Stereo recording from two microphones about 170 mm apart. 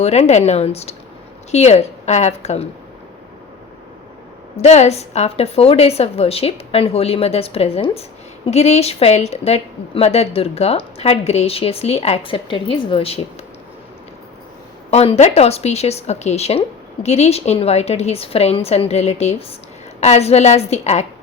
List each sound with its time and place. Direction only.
0.0 s a woman's voice: 40° left (ahead or behind)
4.5 s a woman's voice: 40° left (ahead or behind)
14.8 s a woman's voice: 40° left (ahead or behind)